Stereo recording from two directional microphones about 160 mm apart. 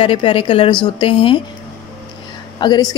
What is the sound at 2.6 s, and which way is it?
Speech, 25° left (ahead or behind).